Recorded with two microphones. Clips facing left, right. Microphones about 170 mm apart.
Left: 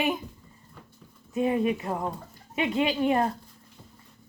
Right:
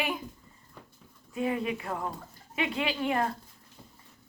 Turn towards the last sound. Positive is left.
turn(degrees=25)  # may be behind; listen again after turning